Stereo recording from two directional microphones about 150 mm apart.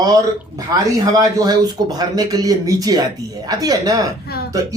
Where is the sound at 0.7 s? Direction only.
25° right (ahead or behind).